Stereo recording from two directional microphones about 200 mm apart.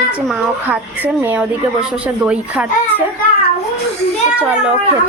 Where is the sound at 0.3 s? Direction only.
5° right (ahead or behind).